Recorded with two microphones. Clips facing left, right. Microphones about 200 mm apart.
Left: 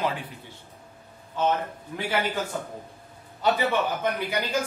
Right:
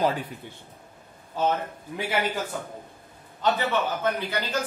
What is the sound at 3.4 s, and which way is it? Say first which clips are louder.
Speech: left 1 dB; 10° left (ahead or behind).